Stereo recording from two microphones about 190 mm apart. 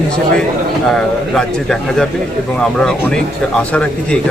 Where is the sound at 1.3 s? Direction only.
5° left (ahead or behind).